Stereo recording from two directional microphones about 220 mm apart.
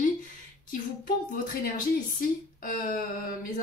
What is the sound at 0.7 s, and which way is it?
Speech, 40° left (ahead or behind).